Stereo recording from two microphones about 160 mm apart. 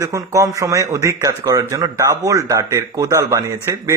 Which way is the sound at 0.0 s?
20° right (ahead or behind).